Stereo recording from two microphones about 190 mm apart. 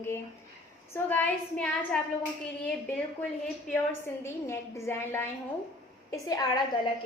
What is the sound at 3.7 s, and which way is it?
A woman's voice, 15° left (ahead or behind).